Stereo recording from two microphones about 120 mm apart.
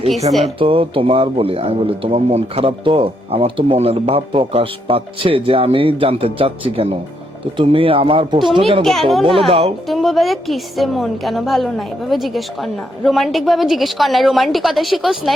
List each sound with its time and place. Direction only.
0.4 s speech: 50° right (ahead or behind)
8.8 s a woman's voice: centre (ahead or behind)
9.5 s speech: 55° right (ahead or behind)
9.9 s a woman's voice: centre (ahead or behind)